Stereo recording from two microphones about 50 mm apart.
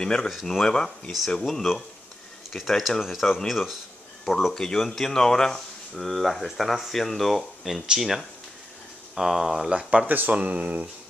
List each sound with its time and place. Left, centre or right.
0.0 s speech: centre
0.3 s speech: centre
0.7 s speech: centre
4.6 s speech: centre
10.0 s speech: right
10.3 s speech: right